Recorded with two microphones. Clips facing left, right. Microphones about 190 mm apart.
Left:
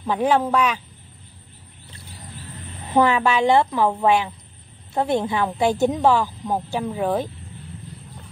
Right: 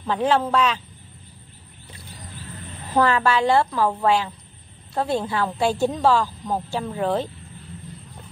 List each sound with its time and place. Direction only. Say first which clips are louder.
0.0 s a woman's voice: left 1 dB; 10° left (ahead or behind)
2.9 s a woman's voice: left 1 dB; 15° left (ahead or behind)